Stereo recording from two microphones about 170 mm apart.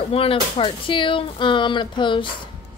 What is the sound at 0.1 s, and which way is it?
Speech, 35° left (ahead or behind).